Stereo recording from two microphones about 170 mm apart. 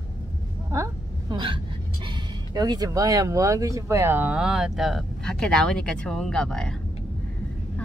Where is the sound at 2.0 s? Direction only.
25° right (ahead or behind); by 6.7 s 5° left (ahead or behind).